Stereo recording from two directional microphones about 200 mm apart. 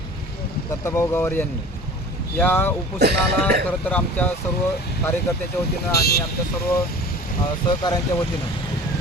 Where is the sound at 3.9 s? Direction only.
10° left (ahead or behind).